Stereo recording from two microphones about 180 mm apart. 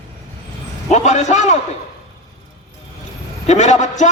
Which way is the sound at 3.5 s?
40° left (ahead or behind).